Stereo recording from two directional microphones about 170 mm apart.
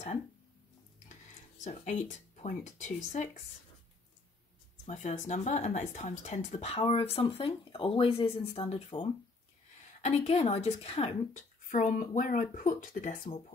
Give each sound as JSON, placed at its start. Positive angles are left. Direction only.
{"t": 1.6, "sound": "speech", "side_deg": 45}
{"t": 4.8, "sound": "speech", "side_deg": 45}
{"t": 11.6, "sound": "speech", "side_deg": 50}